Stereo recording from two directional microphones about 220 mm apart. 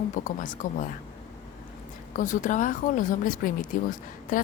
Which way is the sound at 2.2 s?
35° left (ahead or behind).